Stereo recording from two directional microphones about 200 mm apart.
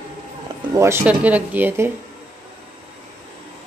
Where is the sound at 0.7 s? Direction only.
10° right (ahead or behind).